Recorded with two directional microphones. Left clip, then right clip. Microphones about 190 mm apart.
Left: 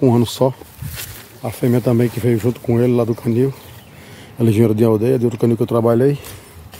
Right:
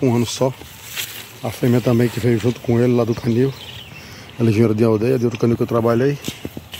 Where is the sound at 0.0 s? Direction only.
30° left (ahead or behind).